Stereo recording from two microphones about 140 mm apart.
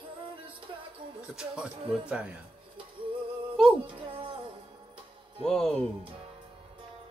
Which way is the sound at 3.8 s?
35° right (ahead or behind).